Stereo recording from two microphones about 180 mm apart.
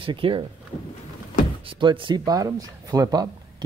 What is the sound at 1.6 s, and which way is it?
Speech, 30° right (ahead or behind).